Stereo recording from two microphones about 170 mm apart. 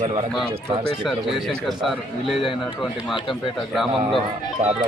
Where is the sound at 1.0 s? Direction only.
Centre (ahead or behind).